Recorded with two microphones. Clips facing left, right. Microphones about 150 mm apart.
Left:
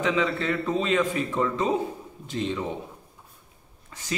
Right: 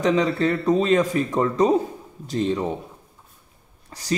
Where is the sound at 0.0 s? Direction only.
40° right (ahead or behind).